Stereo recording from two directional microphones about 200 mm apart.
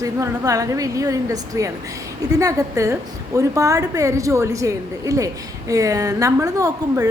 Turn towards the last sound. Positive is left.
turn(degrees=-15)  # may be behind; listen again after turning